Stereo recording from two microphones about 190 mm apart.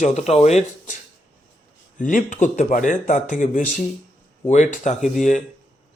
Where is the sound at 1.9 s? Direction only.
45° left (ahead or behind).